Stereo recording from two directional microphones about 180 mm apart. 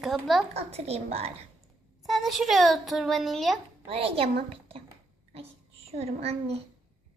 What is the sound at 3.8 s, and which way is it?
Speech, 30° right (ahead or behind).